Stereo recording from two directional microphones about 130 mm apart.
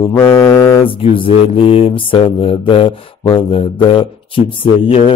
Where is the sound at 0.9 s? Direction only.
45° left (ahead or behind).